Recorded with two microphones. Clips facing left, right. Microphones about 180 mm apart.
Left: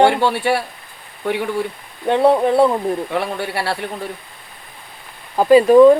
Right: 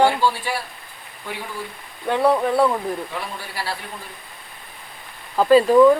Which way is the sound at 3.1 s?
65° left (ahead or behind).